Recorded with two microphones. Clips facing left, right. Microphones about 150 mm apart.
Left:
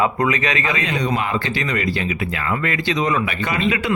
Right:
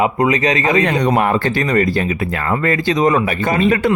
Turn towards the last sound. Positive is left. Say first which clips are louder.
# right 6 dB
turn(degrees=-45)  # may be behind; listen again after turning